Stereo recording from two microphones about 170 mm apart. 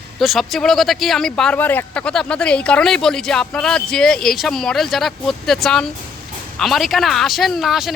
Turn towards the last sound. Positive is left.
turn(degrees=0)  # may be behind; listen again after turning